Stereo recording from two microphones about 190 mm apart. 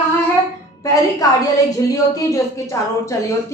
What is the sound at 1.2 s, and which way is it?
A woman's voice, 20° left (ahead or behind).